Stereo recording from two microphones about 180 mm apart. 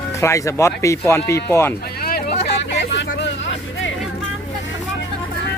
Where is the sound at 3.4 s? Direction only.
90° left.